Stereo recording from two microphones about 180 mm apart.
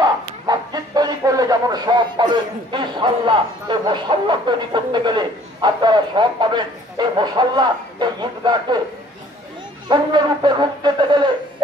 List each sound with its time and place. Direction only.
0.0 s speech: 20° right (ahead or behind)
9.8 s speech: 25° right (ahead or behind)